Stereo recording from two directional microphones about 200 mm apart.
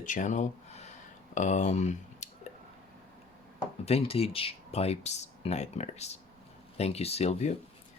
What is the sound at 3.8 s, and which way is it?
Speech, 30° left (ahead or behind).